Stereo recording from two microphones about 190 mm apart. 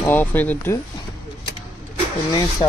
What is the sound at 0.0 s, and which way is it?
Speech, 10° left (ahead or behind).